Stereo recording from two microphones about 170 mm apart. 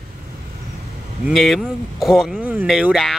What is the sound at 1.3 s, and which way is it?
A man's voice, centre (ahead or behind).